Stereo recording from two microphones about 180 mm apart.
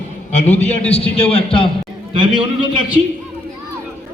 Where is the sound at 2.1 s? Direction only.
25° right (ahead or behind).